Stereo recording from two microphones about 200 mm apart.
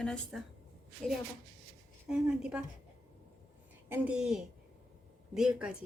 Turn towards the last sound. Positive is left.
turn(degrees=-5)  # may be behind; listen again after turning